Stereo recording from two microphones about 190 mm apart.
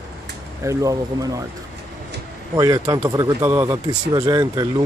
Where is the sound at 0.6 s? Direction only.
15° right (ahead or behind).